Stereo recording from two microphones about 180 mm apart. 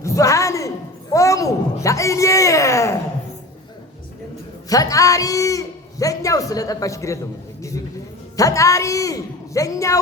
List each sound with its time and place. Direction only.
0.0 s a sound: 15° left (ahead or behind)
4.7 s a man's voice: 20° left (ahead or behind)
8.4 s a man's voice: 15° left (ahead or behind)